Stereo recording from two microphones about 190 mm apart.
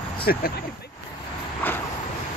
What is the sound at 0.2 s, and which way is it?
Speech, 50° left (ahead or behind).